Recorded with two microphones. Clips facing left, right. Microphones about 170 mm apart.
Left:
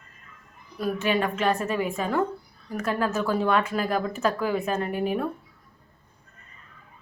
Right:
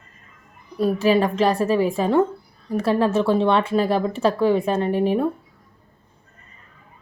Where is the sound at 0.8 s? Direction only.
30° right (ahead or behind).